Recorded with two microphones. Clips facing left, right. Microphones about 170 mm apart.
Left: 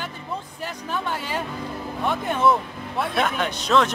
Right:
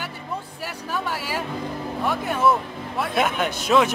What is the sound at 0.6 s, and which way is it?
A man's voice, 10° right (ahead or behind).